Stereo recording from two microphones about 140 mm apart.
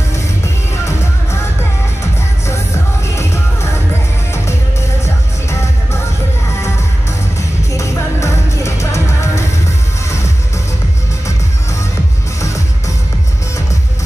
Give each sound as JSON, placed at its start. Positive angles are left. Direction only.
{"t": 7.7, "sound": "music", "side_deg": 20}